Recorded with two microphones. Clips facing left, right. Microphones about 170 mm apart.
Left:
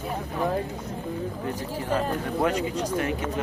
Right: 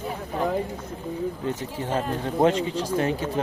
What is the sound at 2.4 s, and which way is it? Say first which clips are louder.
Speech: right 4 dB; 25° right (ahead or behind).